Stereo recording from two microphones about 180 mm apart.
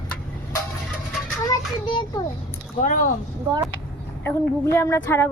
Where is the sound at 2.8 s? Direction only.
50° left (ahead or behind).